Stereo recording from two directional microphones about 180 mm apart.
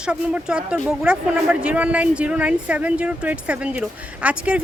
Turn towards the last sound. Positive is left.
turn(degrees=-5)  # may be behind; listen again after turning